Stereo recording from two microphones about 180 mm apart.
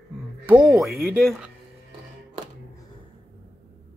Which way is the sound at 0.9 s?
10° right (ahead or behind).